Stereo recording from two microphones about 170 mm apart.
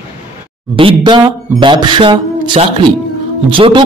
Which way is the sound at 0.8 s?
30° right (ahead or behind).